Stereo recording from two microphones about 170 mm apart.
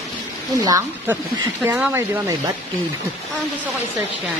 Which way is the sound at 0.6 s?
20° right (ahead or behind).